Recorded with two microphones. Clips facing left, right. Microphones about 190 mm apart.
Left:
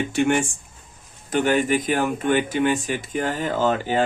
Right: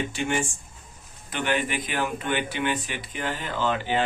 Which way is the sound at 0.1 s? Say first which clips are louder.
Left 7 dB; 55° left (ahead or behind).